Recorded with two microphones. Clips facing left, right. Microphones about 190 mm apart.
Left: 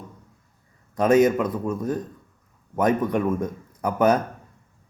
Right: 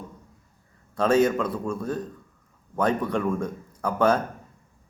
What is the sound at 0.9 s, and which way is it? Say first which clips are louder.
A man's voice: left 3 dB; 15° left (ahead or behind).